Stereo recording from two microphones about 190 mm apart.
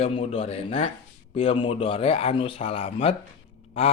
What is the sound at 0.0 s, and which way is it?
A man's voice, 35° left (ahead or behind).